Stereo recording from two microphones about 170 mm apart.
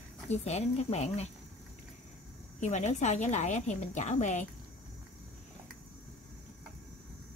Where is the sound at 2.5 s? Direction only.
45° left (ahead or behind).